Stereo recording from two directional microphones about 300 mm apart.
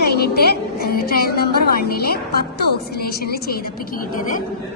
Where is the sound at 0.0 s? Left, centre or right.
Left.